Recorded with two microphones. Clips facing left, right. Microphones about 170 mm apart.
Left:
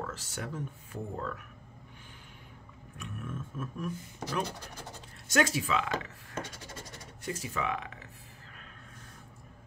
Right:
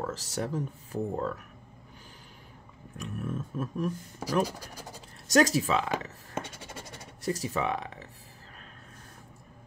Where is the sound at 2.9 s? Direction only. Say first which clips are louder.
Right 6 dB; 35° right (ahead or behind).